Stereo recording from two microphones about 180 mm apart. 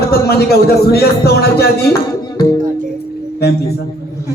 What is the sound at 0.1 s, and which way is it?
Speech, 60° left (ahead or behind).